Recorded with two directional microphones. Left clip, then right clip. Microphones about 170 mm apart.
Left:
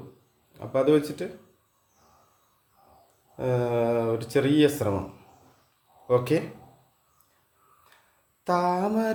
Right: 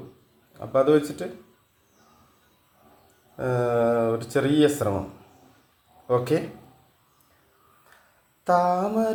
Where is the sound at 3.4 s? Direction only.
10° left (ahead or behind).